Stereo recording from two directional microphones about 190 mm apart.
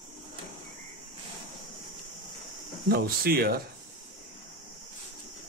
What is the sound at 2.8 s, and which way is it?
Speech, 55° right (ahead or behind).